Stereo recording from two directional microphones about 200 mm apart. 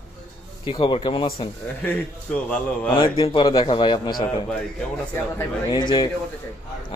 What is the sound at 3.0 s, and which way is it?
Speech, 25° left (ahead or behind).